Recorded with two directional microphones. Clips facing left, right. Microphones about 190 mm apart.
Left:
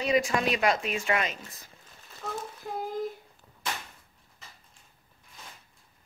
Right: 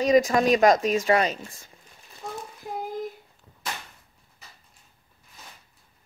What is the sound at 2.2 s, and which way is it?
Child singing, 15° right (ahead or behind).